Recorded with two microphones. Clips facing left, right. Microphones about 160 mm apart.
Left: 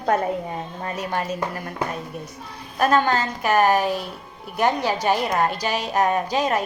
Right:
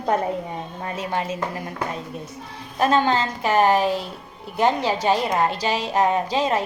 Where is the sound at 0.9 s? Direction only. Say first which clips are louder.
Even; 25° right (ahead or behind).